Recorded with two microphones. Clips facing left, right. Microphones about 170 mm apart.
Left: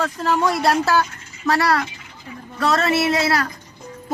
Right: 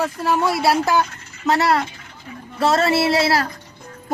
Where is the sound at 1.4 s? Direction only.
20° right (ahead or behind).